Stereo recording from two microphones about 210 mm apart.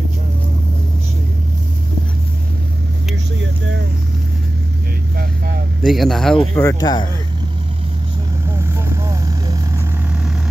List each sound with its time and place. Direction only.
3.3 s vehicle: 60° right (ahead or behind)
5.8 s speech: centre (ahead or behind)
6.5 s speech: 15° left (ahead or behind)
8.5 s vehicle: 15° right (ahead or behind)